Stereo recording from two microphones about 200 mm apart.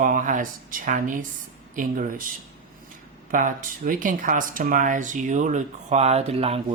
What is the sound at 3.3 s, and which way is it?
Speech, 40° right (ahead or behind).